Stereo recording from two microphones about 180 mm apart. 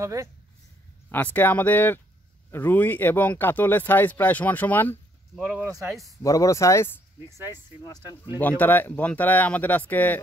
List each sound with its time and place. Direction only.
0.0 s speech: 15° right (ahead or behind)
1.1 s speech: 10° left (ahead or behind)
5.7 s speech: 15° right (ahead or behind)
6.2 s speech: 20° left (ahead or behind)
7.2 s speech: 15° right (ahead or behind)
8.4 s speech: 10° left (ahead or behind)